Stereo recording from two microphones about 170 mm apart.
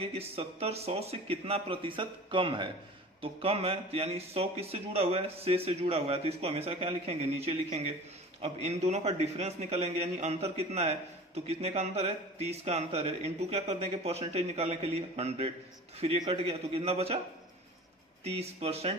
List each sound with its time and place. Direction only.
0.0 s a man's voice: 35° right (ahead or behind)
18.2 s a man's voice: 35° right (ahead or behind)